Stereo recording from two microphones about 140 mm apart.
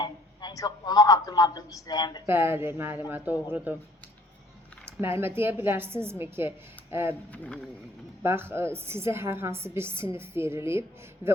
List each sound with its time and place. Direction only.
0.0 s a man's voice: 30° left (ahead or behind)
2.2 s a woman's voice: 15° right (ahead or behind)
4.9 s a woman's voice: 15° right (ahead or behind)
7.3 s speech: 10° left (ahead or behind)
8.2 s a woman's voice: 15° right (ahead or behind)